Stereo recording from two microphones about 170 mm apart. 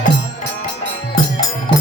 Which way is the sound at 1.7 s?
30° left (ahead or behind).